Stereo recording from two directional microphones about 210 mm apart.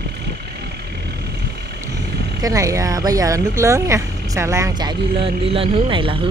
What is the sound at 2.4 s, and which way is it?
Speech, 15° right (ahead or behind).